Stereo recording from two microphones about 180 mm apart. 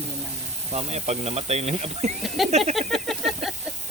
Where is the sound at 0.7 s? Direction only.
35° right (ahead or behind).